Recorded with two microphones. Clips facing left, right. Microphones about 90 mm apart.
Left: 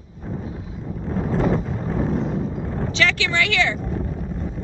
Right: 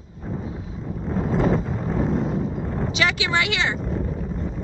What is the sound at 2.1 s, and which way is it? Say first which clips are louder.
Vehicle: even; 15° right (ahead or behind).